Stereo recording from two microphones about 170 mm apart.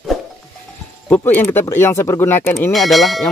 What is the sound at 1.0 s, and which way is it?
Speech, 10° left (ahead or behind).